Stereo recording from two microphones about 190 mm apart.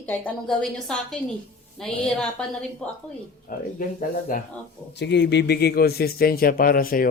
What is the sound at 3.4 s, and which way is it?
Speech, 50° left (ahead or behind).